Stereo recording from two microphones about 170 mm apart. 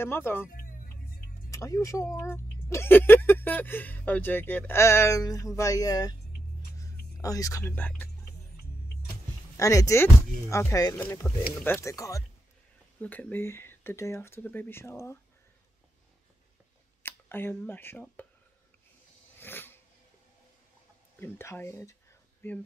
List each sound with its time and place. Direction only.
0.0 s speech: 15° left (ahead or behind)
0.5 s music: 55° left (ahead or behind)
1.5 s speech: 20° left (ahead or behind)
9.6 s speech: 20° left (ahead or behind)
11.0 s speech: 10° left (ahead or behind)
13.0 s speech: 10° left (ahead or behind)
17.0 s speech: 15° left (ahead or behind)
19.3 s a sound: 10° left (ahead or behind)
21.2 s speech: 15° left (ahead or behind)